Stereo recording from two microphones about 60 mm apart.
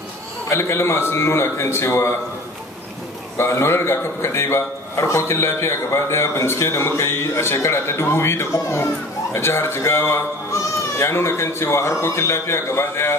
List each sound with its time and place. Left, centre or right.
0.5 s a man's voice: left
3.3 s a man's voice: left